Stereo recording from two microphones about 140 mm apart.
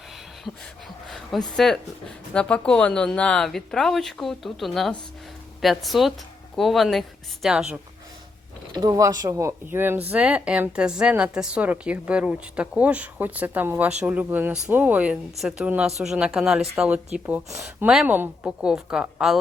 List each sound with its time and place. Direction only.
0.5 s speech: centre (ahead or behind)
8.7 s a woman's voice: 30° right (ahead or behind); by 19.4 s 5° right (ahead or behind)